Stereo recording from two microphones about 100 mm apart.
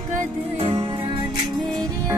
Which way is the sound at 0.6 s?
65° right (ahead or behind).